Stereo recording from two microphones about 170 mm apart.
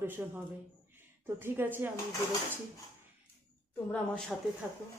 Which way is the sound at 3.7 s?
5° left (ahead or behind).